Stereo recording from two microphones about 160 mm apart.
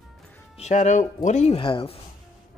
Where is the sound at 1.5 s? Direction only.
35° left (ahead or behind).